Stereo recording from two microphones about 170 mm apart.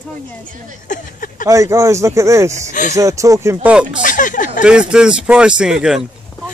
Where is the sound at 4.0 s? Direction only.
50° left (ahead or behind).